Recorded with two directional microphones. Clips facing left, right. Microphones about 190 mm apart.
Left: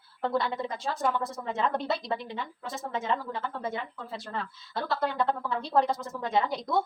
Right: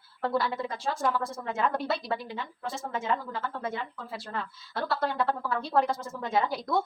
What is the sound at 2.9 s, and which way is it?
Speech, 20° left (ahead or behind).